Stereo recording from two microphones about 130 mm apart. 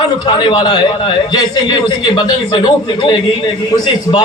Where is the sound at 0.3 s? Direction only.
35° left (ahead or behind).